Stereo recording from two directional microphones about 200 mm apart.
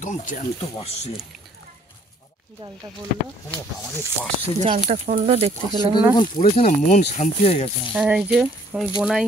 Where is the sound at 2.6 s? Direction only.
25° right (ahead or behind).